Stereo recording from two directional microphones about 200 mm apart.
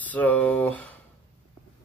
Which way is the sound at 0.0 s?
10° left (ahead or behind).